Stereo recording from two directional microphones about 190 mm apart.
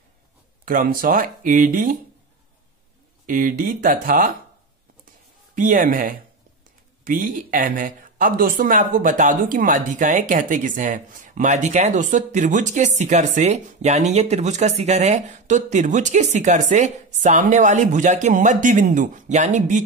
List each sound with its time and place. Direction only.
0.7 s speech: 50° right (ahead or behind)
3.3 s speech: 45° right (ahead or behind)
5.5 s speech: 45° right (ahead or behind)